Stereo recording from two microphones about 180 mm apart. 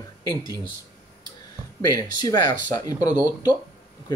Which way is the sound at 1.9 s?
20° left (ahead or behind).